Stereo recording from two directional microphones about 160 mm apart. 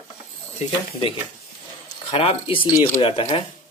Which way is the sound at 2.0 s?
35° left (ahead or behind).